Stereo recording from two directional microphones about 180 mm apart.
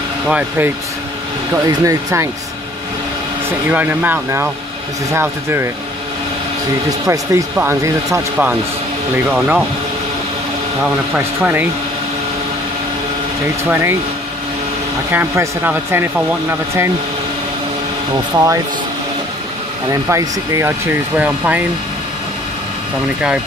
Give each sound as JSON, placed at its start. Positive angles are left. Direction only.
{"t": 0.3, "sound": "speech", "side_deg": -10}
{"t": 1.7, "sound": "speech", "side_deg": -20}
{"t": 3.6, "sound": "speech", "side_deg": -10}
{"t": 7.1, "sound": "speech", "side_deg": -15}
{"t": 11.1, "sound": "speech", "side_deg": -10}
{"t": 13.7, "sound": "speech", "side_deg": -15}
{"t": 15.0, "sound": "speech", "side_deg": -10}
{"t": 18.3, "sound": "speech", "side_deg": -20}
{"t": 19.9, "sound": "speech", "side_deg": -15}